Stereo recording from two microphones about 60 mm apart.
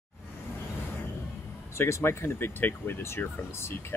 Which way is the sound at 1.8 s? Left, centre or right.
Left.